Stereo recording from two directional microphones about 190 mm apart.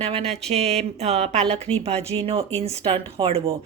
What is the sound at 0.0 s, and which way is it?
A woman's voice, 35° right (ahead or behind).